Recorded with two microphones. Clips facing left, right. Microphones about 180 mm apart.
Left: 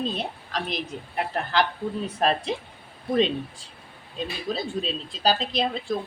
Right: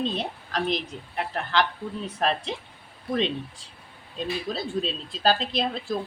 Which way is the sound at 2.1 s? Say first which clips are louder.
Left 2 dB; 40° left (ahead or behind).